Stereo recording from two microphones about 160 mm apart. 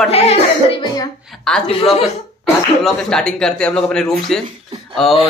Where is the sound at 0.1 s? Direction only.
40° left (ahead or behind).